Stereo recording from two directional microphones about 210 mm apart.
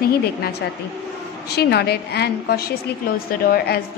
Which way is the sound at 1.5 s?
50° left (ahead or behind).